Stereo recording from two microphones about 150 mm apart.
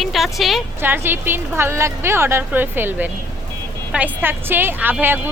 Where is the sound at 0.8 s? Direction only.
15° right (ahead or behind).